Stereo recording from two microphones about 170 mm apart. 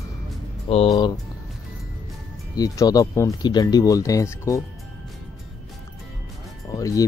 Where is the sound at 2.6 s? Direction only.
20° left (ahead or behind).